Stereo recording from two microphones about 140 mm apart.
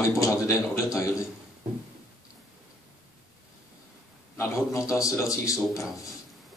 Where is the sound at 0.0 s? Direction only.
20° left (ahead or behind).